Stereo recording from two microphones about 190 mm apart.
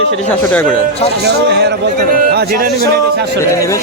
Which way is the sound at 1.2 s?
60° right (ahead or behind).